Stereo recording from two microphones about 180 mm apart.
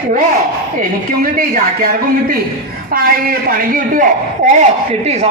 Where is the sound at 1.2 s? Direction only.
50° right (ahead or behind).